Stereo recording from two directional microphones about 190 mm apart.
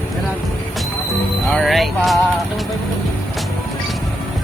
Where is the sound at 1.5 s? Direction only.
Centre (ahead or behind).